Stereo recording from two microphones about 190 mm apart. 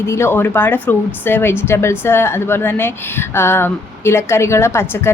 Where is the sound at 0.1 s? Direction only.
10° left (ahead or behind).